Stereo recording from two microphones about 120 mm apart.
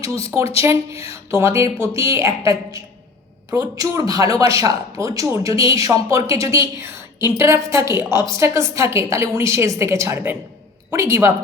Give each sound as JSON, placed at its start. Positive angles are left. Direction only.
{"t": 0.6, "sound": "speech", "side_deg": -25}